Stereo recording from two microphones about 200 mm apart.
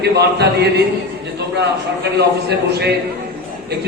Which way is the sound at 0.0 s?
55° right (ahead or behind).